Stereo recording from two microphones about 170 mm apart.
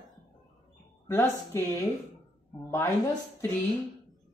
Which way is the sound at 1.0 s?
15° left (ahead or behind).